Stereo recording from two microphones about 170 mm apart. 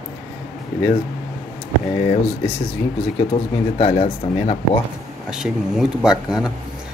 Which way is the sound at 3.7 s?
35° left (ahead or behind).